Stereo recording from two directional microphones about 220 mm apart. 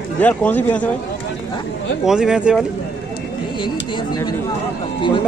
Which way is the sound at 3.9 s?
20° left (ahead or behind).